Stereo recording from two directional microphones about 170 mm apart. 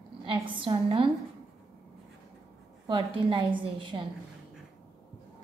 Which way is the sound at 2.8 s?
30° right (ahead or behind).